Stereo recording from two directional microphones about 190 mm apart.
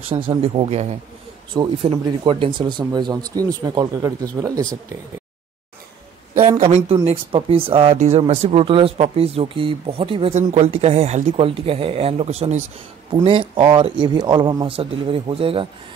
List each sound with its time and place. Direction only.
0.1 s speech: 25° right (ahead or behind)
6.6 s speech: 30° right (ahead or behind)